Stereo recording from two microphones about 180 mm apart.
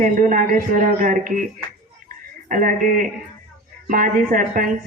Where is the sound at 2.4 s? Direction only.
45° right (ahead or behind).